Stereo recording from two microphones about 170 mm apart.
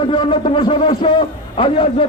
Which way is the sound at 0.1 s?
30° left (ahead or behind).